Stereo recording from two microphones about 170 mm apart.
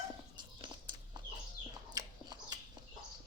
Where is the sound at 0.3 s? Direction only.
25° right (ahead or behind).